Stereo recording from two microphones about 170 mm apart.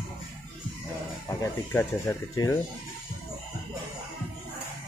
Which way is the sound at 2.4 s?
25° left (ahead or behind).